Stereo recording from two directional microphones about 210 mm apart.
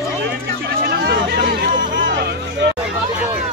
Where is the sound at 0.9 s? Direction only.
50° right (ahead or behind).